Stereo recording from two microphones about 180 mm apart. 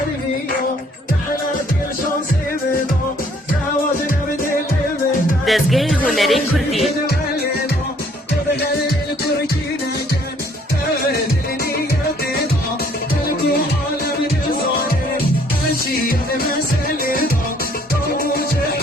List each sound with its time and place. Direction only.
5.5 s music: centre (ahead or behind)
17.0 s music: 50° left (ahead or behind)